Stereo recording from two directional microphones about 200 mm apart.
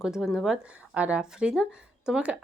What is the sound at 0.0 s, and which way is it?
Speech, 5° right (ahead or behind).